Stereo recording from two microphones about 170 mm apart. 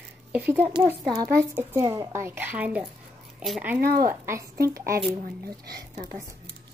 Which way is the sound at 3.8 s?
60° right (ahead or behind).